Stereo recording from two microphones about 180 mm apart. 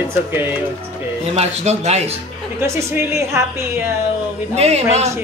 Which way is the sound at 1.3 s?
35° right (ahead or behind).